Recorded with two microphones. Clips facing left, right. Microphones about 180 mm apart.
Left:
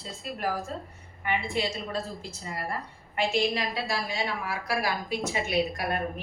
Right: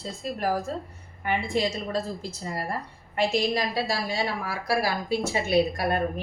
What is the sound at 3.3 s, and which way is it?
A woman's voice, 35° right (ahead or behind).